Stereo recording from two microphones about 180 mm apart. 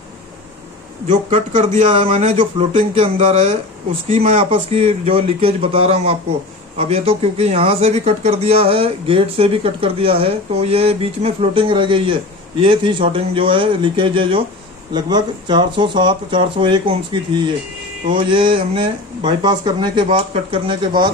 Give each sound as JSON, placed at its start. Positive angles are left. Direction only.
{"t": 1.3, "sound": "speech", "side_deg": -35}